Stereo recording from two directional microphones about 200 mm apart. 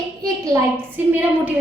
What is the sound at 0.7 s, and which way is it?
Speech, 10° right (ahead or behind).